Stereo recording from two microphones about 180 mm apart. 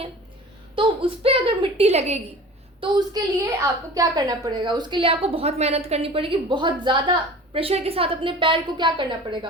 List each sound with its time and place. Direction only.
0.8 s a woman's voice: 30° right (ahead or behind)
2.8 s a woman's voice: 20° right (ahead or behind)